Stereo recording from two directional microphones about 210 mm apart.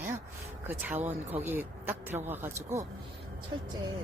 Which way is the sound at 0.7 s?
10° right (ahead or behind).